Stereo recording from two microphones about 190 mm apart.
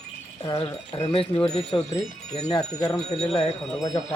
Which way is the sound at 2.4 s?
20° left (ahead or behind).